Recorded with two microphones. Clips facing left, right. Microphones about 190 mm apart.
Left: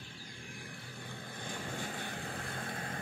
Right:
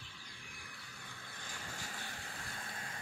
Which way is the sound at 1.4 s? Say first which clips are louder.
Left 8 dB; 55° left (ahead or behind).